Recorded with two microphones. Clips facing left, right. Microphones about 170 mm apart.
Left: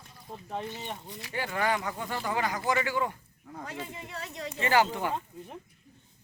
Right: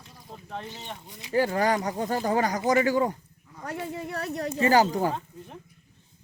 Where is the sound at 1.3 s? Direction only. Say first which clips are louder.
Right 6 dB; 40° right (ahead or behind).